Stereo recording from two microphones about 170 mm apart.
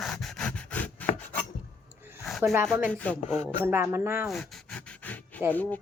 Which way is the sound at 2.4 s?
15° right (ahead or behind).